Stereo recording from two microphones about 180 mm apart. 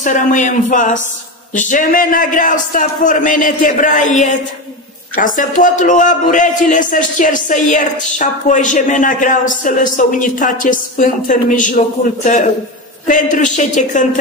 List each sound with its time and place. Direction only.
0.0 s a man's voice: 45° left (ahead or behind)